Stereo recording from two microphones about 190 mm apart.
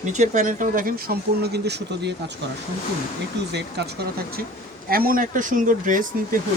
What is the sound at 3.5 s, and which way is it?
Speech, 60° right (ahead or behind).